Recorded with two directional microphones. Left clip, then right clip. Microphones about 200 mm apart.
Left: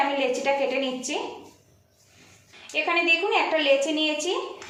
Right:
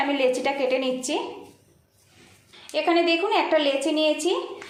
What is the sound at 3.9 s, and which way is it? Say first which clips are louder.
Speech: right 3 dB; 45° right (ahead or behind).